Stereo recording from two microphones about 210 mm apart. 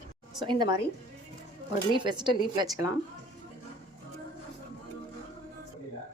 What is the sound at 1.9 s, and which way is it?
Speech, 20° right (ahead or behind).